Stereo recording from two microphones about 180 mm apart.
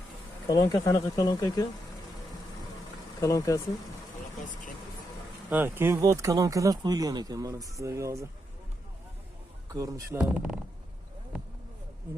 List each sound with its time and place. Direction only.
0.4 s speech: 20° left (ahead or behind)
3.2 s speech: 15° left (ahead or behind)
5.5 s speech: 10° right (ahead or behind)
9.6 s speech: 20° right (ahead or behind)
10.2 s speech: 5° right (ahead or behind)